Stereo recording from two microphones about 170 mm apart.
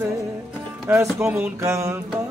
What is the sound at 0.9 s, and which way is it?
Music, 15° right (ahead or behind).